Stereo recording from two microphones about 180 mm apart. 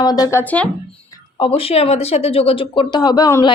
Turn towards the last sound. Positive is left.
turn(degrees=20)  # may be behind; listen again after turning